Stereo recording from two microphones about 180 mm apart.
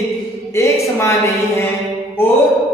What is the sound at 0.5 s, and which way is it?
Speech, 15° left (ahead or behind).